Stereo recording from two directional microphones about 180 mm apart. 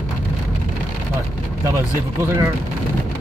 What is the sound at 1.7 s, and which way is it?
Speech, 15° right (ahead or behind).